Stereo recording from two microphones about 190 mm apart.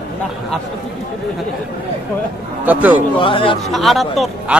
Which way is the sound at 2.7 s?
10° right (ahead or behind).